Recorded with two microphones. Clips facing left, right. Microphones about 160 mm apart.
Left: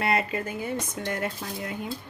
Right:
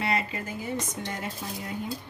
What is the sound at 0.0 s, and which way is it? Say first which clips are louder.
Speech: left 3 dB; 55° left (ahead or behind).